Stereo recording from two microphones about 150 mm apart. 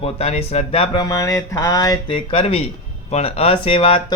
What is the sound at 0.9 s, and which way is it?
A man's voice, 25° left (ahead or behind).